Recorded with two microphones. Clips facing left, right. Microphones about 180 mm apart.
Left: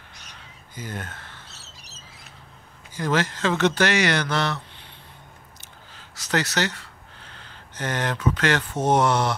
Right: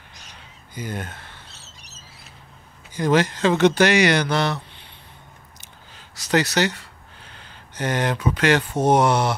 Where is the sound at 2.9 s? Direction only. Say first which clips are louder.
Right 5 dB; 15° right (ahead or behind).